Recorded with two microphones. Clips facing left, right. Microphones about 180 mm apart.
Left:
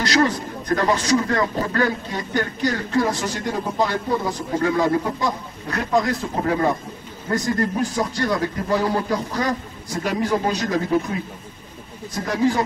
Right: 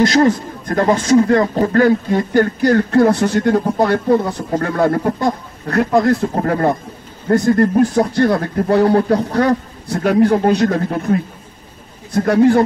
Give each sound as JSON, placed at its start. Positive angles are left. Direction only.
{"t": 0.0, "sound": "speech", "side_deg": -50}